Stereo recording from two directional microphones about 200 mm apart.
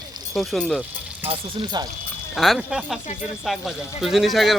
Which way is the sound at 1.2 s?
25° right (ahead or behind).